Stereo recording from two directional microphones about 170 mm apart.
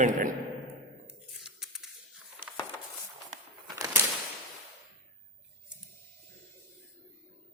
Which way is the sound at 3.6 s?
20° right (ahead or behind).